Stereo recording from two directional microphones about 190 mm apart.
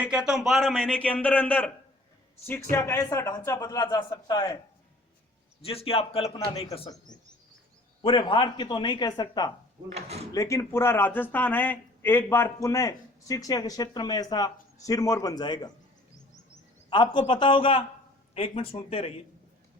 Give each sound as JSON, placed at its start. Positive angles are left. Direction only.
{"t": 0.0, "sound": "a man's voice", "side_deg": -5}
{"t": 5.6, "sound": "a man's voice", "side_deg": 30}
{"t": 9.9, "sound": "speech", "side_deg": -35}
{"t": 10.3, "sound": "speech", "side_deg": 15}
{"t": 16.9, "sound": "a man's voice", "side_deg": 25}